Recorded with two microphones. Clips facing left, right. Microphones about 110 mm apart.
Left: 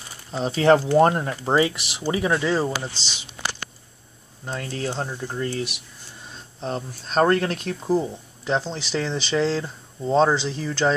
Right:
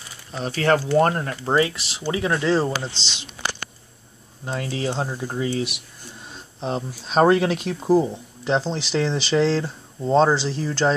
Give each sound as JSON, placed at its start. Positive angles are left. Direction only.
{"t": 0.3, "sound": "speech", "side_deg": 25}
{"t": 4.5, "sound": "speech", "side_deg": 0}